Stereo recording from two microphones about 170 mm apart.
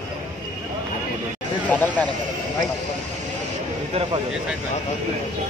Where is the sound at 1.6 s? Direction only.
10° left (ahead or behind).